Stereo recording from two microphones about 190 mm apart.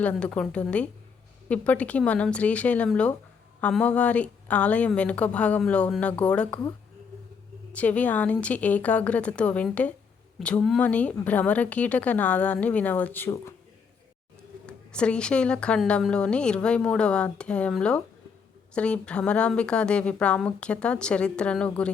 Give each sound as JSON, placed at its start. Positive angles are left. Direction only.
{"t": 0.0, "sound": "a woman's voice", "side_deg": 5}
{"t": 7.7, "sound": "speech", "side_deg": 5}
{"t": 14.7, "sound": "a woman's voice", "side_deg": 5}